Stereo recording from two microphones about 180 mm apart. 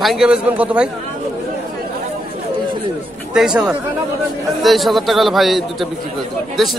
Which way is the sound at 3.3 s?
5° right (ahead or behind).